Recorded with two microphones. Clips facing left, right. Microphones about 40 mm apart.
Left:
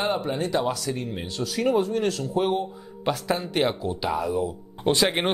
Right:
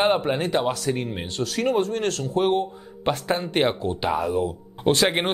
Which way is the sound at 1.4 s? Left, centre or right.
Centre.